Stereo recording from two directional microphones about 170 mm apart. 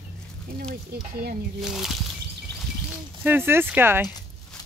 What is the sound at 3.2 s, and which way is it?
Speech, 10° right (ahead or behind).